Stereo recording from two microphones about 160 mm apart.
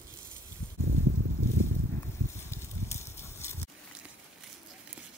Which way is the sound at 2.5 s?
15° left (ahead or behind).